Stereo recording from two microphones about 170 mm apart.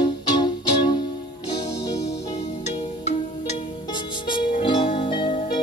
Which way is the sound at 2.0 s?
40° left (ahead or behind).